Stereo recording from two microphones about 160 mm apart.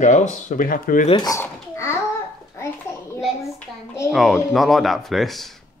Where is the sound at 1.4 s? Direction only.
15° left (ahead or behind).